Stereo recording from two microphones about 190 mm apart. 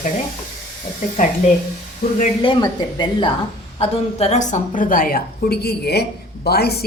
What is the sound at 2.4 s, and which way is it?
A woman's voice, 25° left (ahead or behind).